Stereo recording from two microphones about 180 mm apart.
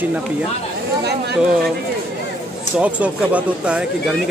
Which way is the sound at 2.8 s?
5° right (ahead or behind).